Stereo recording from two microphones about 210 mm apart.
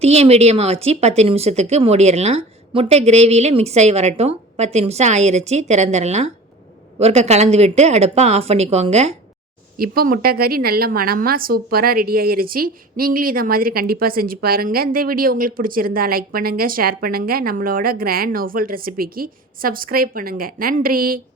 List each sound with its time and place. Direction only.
0.0 s speech: 30° right (ahead or behind)
9.7 s a woman's voice: 45° right (ahead or behind)